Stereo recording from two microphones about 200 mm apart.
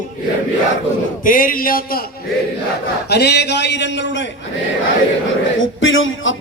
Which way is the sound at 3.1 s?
55° left (ahead or behind).